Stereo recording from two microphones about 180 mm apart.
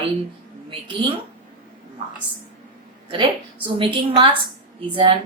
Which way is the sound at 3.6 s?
30° right (ahead or behind).